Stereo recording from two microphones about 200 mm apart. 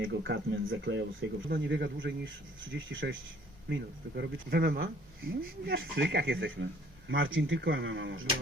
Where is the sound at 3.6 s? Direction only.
60° right (ahead or behind).